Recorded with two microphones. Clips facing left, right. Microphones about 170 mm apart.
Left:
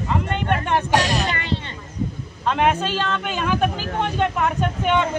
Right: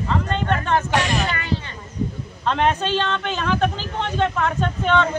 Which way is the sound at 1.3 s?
25° left (ahead or behind).